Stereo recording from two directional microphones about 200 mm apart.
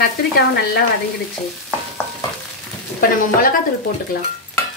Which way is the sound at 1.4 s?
5° left (ahead or behind).